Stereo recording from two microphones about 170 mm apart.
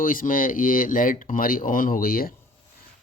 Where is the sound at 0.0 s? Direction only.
55° left (ahead or behind).